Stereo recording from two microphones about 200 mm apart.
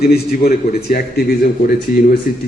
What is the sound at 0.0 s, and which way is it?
A man's voice, 50° left (ahead or behind).